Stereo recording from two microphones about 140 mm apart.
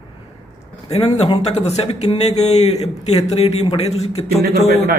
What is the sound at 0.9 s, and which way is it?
Speech, 45° left (ahead or behind).